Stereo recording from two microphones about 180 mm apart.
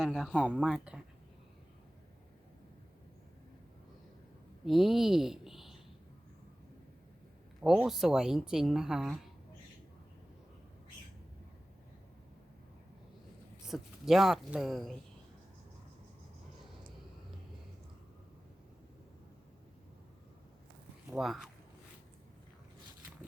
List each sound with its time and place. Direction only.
0.0 s a woman's voice: centre (ahead or behind)
4.6 s speech: centre (ahead or behind)
7.6 s a woman's voice: 5° right (ahead or behind)
13.7 s a woman's voice: centre (ahead or behind)
21.1 s speech: centre (ahead or behind)